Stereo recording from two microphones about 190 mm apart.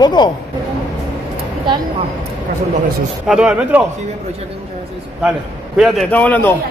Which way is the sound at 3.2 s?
5° right (ahead or behind).